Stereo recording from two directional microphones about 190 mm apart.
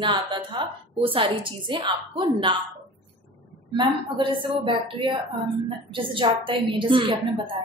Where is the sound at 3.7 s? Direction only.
25° right (ahead or behind).